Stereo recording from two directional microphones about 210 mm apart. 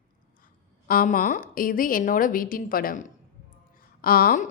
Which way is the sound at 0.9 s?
40° left (ahead or behind).